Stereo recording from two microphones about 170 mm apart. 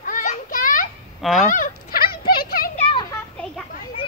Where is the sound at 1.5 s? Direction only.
55° left (ahead or behind).